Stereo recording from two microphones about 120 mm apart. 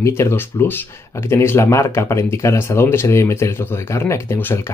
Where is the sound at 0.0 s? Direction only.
20° left (ahead or behind).